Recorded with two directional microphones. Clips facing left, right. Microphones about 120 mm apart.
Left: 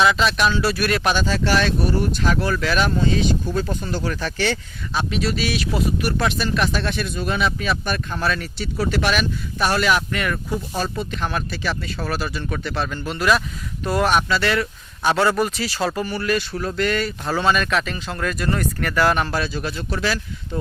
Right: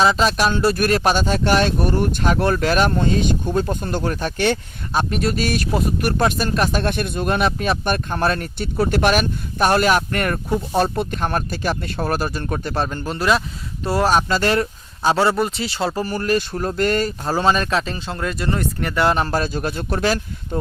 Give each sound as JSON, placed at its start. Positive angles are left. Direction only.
{"t": 0.0, "sound": "speech", "side_deg": -35}
{"t": 16.0, "sound": "speech", "side_deg": -40}
{"t": 19.3, "sound": "speech", "side_deg": -45}